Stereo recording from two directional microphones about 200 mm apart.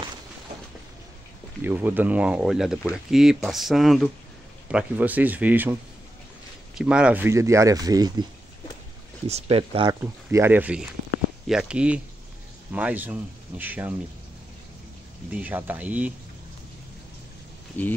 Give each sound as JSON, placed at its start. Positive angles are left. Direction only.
{"t": 1.6, "sound": "speech", "side_deg": -10}
{"t": 6.8, "sound": "speech", "side_deg": -5}
{"t": 9.3, "sound": "speech", "side_deg": -30}
{"t": 10.3, "sound": "speech", "side_deg": -10}
{"t": 15.3, "sound": "speech", "side_deg": -10}
{"t": 17.8, "sound": "speech", "side_deg": 10}